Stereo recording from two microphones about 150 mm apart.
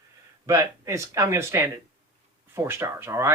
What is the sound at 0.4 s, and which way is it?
Speech, 20° right (ahead or behind).